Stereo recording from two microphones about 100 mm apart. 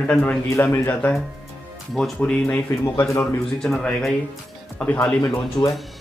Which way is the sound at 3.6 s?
5° left (ahead or behind).